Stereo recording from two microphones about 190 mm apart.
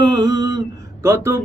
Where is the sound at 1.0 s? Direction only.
15° right (ahead or behind).